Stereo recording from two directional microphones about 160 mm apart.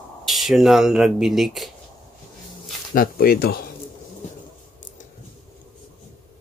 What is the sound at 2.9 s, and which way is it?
Speech, 65° left (ahead or behind).